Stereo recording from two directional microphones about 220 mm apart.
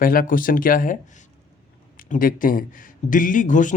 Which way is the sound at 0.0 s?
40° left (ahead or behind).